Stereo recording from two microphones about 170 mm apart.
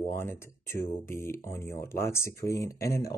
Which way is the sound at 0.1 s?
15° left (ahead or behind).